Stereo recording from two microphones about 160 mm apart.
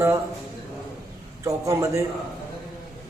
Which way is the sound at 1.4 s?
20° right (ahead or behind).